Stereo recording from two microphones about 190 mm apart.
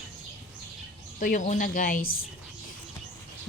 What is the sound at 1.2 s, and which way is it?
Speech, 40° left (ahead or behind).